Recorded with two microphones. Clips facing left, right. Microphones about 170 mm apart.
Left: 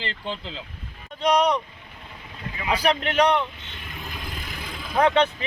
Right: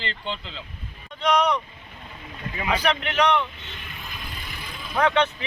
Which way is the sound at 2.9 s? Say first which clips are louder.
Left 3 dB; 35° left (ahead or behind).